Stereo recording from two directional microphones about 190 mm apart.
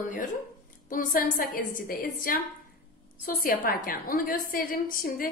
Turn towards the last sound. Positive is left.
turn(degrees=45)  # may be behind; listen again after turning